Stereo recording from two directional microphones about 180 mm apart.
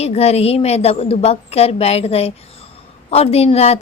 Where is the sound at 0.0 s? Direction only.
35° left (ahead or behind).